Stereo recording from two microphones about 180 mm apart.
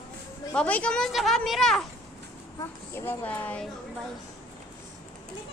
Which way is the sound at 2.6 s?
15° left (ahead or behind).